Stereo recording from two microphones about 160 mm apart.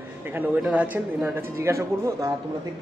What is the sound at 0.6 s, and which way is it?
Speech, 10° right (ahead or behind).